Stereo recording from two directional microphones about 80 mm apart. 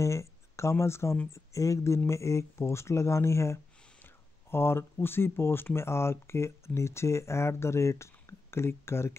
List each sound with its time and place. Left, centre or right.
0.0 s speech: left